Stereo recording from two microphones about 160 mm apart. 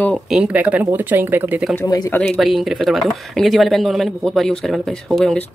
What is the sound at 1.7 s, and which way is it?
Speech, 20° left (ahead or behind).